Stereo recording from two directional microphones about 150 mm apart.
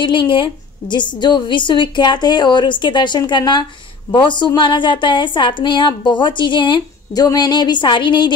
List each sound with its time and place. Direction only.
0.0 s a woman's voice: 35° left (ahead or behind)